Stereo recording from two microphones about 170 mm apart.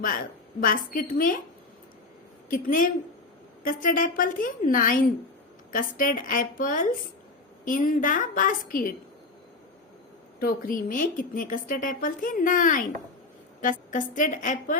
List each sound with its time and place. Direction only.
0.6 s a woman's voice: 55° left (ahead or behind)
2.5 s a woman's voice: 55° left (ahead or behind)
10.4 s a woman's voice: 55° left (ahead or behind)